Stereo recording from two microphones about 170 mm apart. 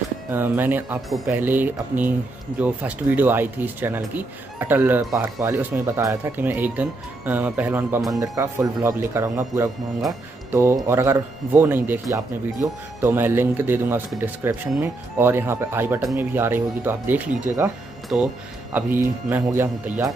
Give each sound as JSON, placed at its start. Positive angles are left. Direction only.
{"t": 0.3, "sound": "speech", "side_deg": -10}